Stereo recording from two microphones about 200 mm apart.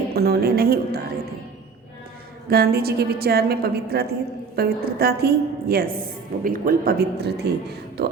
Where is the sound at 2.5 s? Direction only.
50° right (ahead or behind).